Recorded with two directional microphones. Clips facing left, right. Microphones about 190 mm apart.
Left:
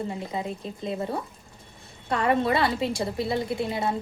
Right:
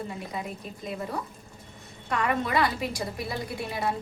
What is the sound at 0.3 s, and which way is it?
A woman's voice, 25° left (ahead or behind).